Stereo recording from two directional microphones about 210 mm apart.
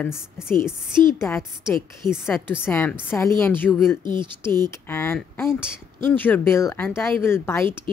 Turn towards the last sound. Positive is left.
turn(degrees=10)  # may be behind; listen again after turning